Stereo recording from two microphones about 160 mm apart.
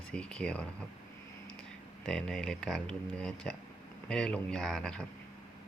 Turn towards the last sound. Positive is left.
turn(degrees=5)  # may be behind; listen again after turning